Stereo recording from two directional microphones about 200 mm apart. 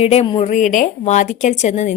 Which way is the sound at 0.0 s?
30° left (ahead or behind).